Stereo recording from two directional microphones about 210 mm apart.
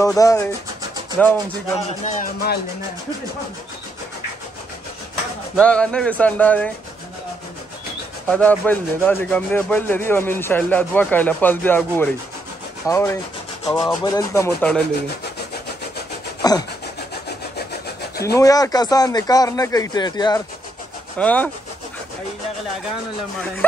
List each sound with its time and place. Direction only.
0.0 s speech: 15° left (ahead or behind)
2.0 s speech: 40° left (ahead or behind)
5.6 s speech: 5° left (ahead or behind)
8.3 s speech: 5° left (ahead or behind)
16.4 s rub: 20° left (ahead or behind)
18.2 s speech: 15° left (ahead or behind)
21.2 s speech: 5° left (ahead or behind)
23.6 s speech: 10° left (ahead or behind)